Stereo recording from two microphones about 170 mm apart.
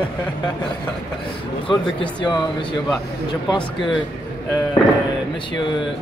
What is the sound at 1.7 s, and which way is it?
Speech, 30° left (ahead or behind).